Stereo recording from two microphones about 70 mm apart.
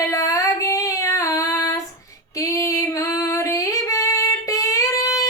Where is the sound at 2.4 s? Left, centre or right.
Left.